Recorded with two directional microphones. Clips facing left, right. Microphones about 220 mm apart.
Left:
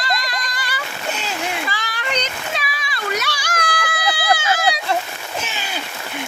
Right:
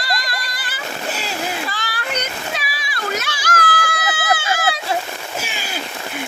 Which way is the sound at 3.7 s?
45° right (ahead or behind).